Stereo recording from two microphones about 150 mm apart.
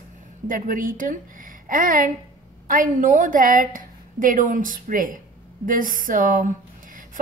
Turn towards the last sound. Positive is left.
turn(degrees=-65)  # may be behind; listen again after turning